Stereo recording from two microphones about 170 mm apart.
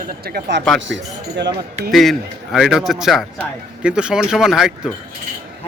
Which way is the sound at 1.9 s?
Centre (ahead or behind).